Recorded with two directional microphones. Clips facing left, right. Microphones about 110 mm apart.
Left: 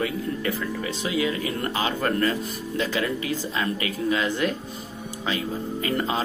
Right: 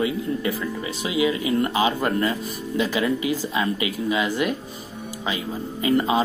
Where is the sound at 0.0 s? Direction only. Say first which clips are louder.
Right 3 dB; 10° right (ahead or behind).